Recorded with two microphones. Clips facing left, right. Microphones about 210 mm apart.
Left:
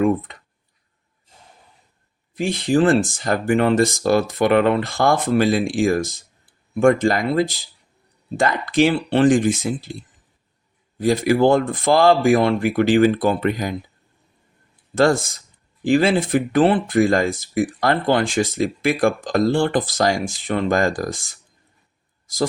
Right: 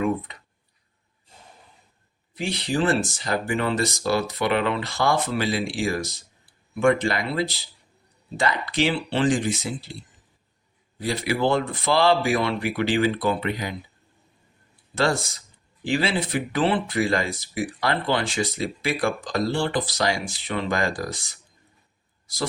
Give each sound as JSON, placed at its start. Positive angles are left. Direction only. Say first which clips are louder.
{"t": 2.3, "sound": "speech", "louder": "left 7 dB", "side_deg": 50}
{"t": 14.9, "sound": "speech", "louder": "left 7 dB", "side_deg": 50}